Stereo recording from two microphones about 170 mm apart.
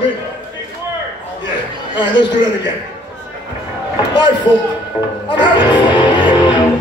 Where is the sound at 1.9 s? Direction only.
25° left (ahead or behind).